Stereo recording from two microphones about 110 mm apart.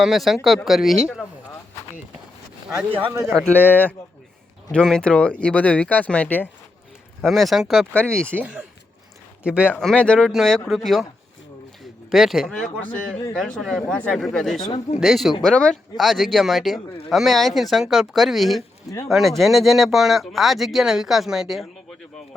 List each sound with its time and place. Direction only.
0.0 s speech: centre (ahead or behind)
3.1 s speech: 30° right (ahead or behind)
3.3 s speech: 15° left (ahead or behind)
7.2 s speech: centre (ahead or behind)
8.3 s speech: 15° right (ahead or behind)
9.8 s speech: 10° left (ahead or behind)